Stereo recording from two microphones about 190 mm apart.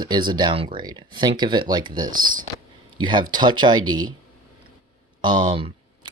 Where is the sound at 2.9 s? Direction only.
25° right (ahead or behind).